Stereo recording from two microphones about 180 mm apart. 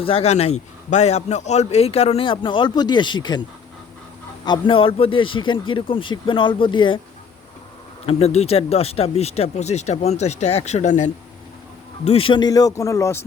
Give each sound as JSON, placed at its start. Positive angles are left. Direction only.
{"t": 0.0, "sound": "a man's voice", "side_deg": 35}
{"t": 4.4, "sound": "a man's voice", "side_deg": 25}
{"t": 8.0, "sound": "a man's voice", "side_deg": 35}